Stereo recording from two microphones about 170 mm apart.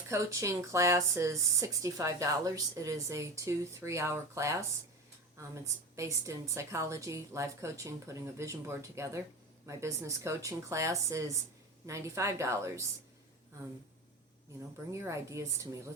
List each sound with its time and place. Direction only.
0.1 s speech: 20° right (ahead or behind)
14.9 s speech: 15° right (ahead or behind)